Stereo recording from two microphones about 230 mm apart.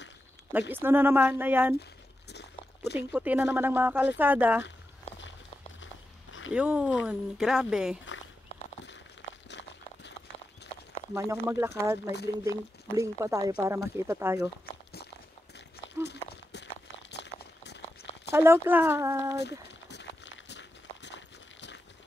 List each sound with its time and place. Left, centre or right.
0.5 s speech: centre
2.3 s a sound: left
3.1 s speech: centre
6.5 s speech: centre
9.5 s a sound: left
11.1 s speech: centre
16.0 s walk: left
17.1 s a sound: left
18.3 s speech: centre
19.9 s walk: left